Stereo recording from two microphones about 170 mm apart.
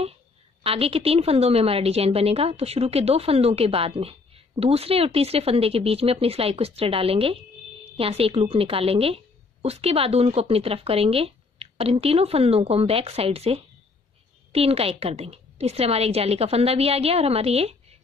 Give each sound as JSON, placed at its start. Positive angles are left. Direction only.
{"t": 0.7, "sound": "a woman's voice", "side_deg": -35}